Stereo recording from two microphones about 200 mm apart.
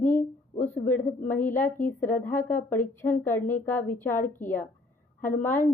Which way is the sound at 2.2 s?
10° left (ahead or behind).